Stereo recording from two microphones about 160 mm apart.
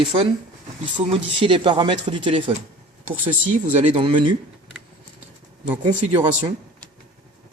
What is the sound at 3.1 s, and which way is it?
Speech, 10° right (ahead or behind).